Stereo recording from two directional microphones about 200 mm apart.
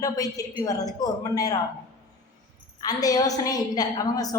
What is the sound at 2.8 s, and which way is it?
A woman's voice, 20° left (ahead or behind).